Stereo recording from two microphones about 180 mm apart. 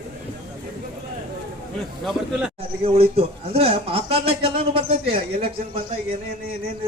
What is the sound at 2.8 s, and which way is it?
A man's voice, 35° right (ahead or behind).